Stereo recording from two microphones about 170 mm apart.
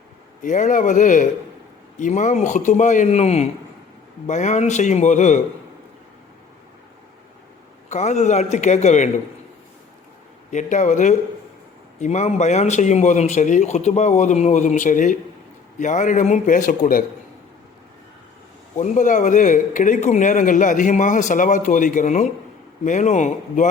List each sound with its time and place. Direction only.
0.4 s a man's voice: 50° left (ahead or behind)
7.9 s a man's voice: 40° left (ahead or behind)
10.5 s a man's voice: 45° left (ahead or behind)
18.8 s a man's voice: 50° left (ahead or behind)